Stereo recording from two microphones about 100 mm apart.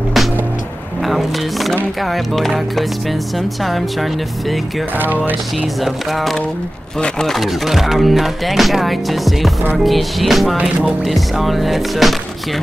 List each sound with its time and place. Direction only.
1.0 s speech: centre (ahead or behind)
5.0 s music: 20° right (ahead or behind)
7.0 s speech: 5° left (ahead or behind)